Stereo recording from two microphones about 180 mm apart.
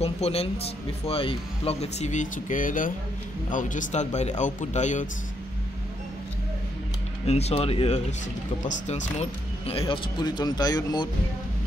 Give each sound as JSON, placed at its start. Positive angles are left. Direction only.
{"t": 0.0, "sound": "speech", "side_deg": 35}
{"t": 7.2, "sound": "speech", "side_deg": 35}